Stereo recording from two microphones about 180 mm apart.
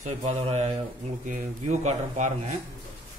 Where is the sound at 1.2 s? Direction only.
45° right (ahead or behind).